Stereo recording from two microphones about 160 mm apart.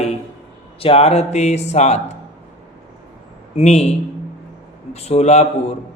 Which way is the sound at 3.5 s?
45° left (ahead or behind).